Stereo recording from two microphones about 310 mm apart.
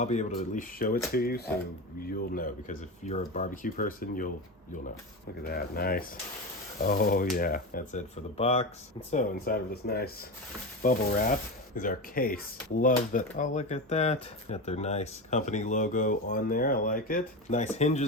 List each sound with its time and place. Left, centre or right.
0.0 s speech: left
5.4 s speech: left